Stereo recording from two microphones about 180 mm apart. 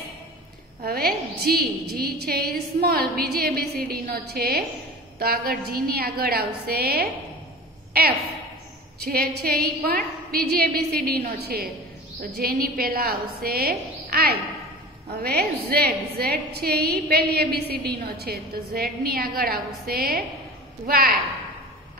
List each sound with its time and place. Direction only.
0.8 s a woman's voice: 60° right (ahead or behind)
9.0 s a woman's voice: 60° right (ahead or behind)